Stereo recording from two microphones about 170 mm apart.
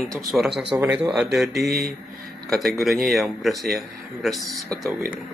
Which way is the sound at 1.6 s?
65° right (ahead or behind).